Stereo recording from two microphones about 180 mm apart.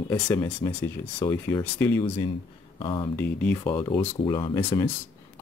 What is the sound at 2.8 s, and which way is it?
Speech, 30° left (ahead or behind).